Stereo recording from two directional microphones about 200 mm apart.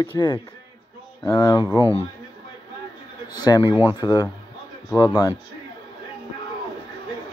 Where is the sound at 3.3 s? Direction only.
20° left (ahead or behind).